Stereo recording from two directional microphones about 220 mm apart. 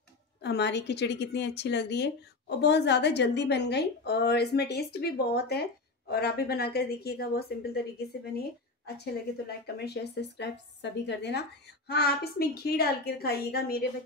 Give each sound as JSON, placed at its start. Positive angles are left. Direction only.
{"t": 0.4, "sound": "a woman's voice", "side_deg": 50}